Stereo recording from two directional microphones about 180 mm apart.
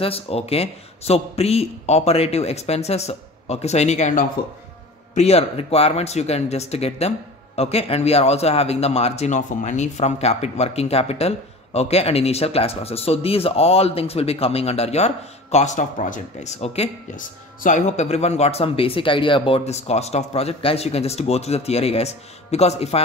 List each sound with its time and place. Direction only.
0.0 s speech: 35° left (ahead or behind)